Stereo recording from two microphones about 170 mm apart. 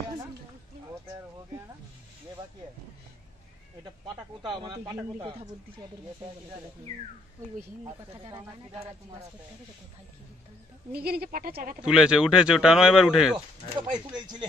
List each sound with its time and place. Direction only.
4.5 s speech: 25° right (ahead or behind)
8.2 s speech: 20° right (ahead or behind)
10.9 s speech: 65° right (ahead or behind)
11.8 s speech: 5° right (ahead or behind)
13.7 s speech: 25° right (ahead or behind)